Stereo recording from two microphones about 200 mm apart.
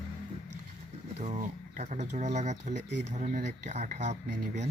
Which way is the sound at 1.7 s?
35° right (ahead or behind).